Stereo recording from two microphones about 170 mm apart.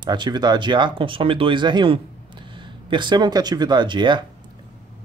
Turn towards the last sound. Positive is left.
turn(degrees=-25)  # may be behind; listen again after turning